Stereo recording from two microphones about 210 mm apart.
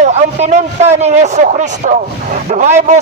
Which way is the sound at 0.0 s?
30° right (ahead or behind).